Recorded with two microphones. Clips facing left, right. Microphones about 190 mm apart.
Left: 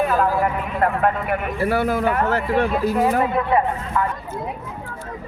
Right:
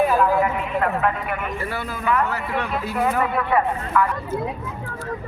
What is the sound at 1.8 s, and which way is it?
Speech, 65° left (ahead or behind).